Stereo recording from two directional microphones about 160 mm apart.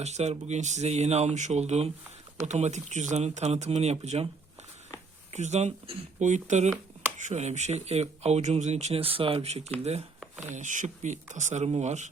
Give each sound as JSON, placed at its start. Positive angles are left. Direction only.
{"t": 0.0, "sound": "speech", "side_deg": -45}
{"t": 5.3, "sound": "speech", "side_deg": -45}
{"t": 10.5, "sound": "speech", "side_deg": -50}